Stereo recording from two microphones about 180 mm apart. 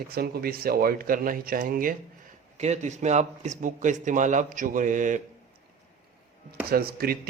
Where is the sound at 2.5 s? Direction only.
40° right (ahead or behind).